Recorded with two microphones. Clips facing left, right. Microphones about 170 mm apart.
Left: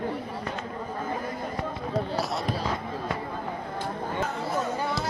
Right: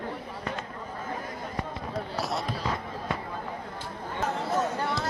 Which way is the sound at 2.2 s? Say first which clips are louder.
Left 1 dB; centre (ahead or behind).